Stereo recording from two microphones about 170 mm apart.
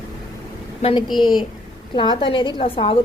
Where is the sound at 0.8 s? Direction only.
35° left (ahead or behind).